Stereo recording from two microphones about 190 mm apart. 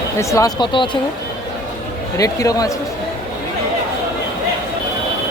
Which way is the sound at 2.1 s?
20° left (ahead or behind).